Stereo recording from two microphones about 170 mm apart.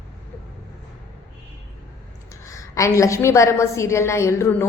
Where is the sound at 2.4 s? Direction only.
20° left (ahead or behind).